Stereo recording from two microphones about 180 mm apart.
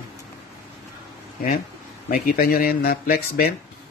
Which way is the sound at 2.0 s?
55° left (ahead or behind).